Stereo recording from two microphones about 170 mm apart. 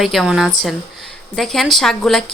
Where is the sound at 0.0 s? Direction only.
Centre (ahead or behind).